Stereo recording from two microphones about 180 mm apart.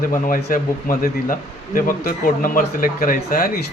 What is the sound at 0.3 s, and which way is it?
A man's voice, 50° left (ahead or behind).